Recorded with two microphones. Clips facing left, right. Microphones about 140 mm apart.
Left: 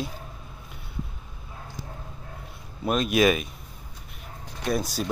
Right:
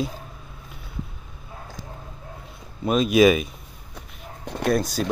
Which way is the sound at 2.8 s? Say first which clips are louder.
Right 5 dB; centre (ahead or behind).